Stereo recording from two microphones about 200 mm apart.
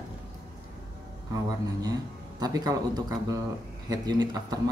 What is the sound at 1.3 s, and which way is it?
Speech, 20° right (ahead or behind).